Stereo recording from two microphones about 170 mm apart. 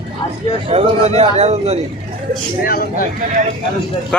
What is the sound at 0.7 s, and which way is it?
A man's voice, 35° right (ahead or behind).